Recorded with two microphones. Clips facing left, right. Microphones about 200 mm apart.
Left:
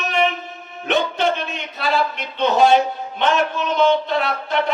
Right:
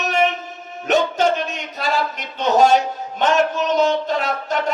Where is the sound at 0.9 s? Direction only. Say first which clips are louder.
Right 2 dB; 45° right (ahead or behind).